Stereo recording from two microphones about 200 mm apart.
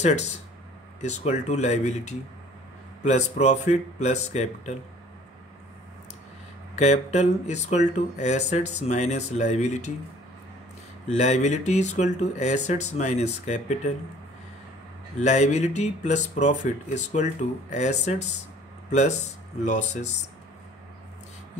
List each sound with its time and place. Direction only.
0.0 s speech: 35° left (ahead or behind)
6.7 s speech: 35° left (ahead or behind)
11.1 s speech: 35° left (ahead or behind)
15.1 s speech: 35° left (ahead or behind)